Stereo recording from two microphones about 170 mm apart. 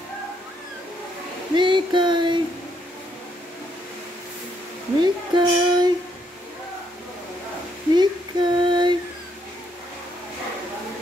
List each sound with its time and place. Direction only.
1.6 s female singing: 25° right (ahead or behind)
5.0 s music: 25° right (ahead or behind)
7.9 s female singing: 25° right (ahead or behind)